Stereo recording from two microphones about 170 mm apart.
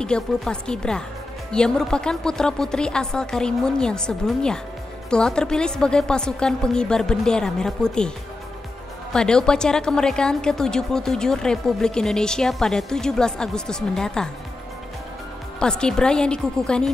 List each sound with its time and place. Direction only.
0.0 s a woman's voice: 5° left (ahead or behind)
9.1 s a woman's voice: 5° left (ahead or behind)
15.6 s a woman's voice: 5° left (ahead or behind)